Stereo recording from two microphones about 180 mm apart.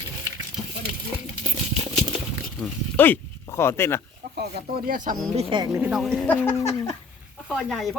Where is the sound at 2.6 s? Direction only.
10° left (ahead or behind).